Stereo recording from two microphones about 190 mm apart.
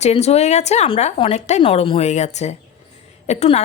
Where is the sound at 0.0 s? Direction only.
35° left (ahead or behind).